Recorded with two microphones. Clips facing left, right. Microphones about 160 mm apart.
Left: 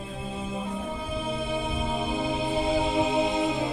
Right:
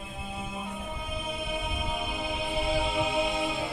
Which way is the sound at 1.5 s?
25° left (ahead or behind).